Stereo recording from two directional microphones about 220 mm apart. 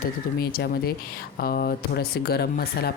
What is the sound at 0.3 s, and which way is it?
Speech, 45° left (ahead or behind).